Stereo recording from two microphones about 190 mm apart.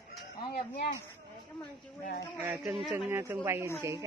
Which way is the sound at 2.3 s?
10° right (ahead or behind).